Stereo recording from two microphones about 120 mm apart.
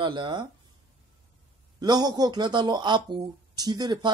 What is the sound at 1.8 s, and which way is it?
Speech, 35° right (ahead or behind).